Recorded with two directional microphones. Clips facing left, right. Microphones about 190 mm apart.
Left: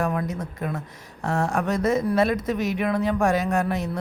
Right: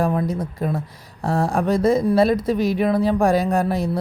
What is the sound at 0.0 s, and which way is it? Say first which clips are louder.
Speech: right 5 dB; 30° right (ahead or behind).